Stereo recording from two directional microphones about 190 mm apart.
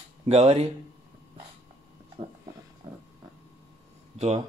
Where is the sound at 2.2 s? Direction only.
40° right (ahead or behind).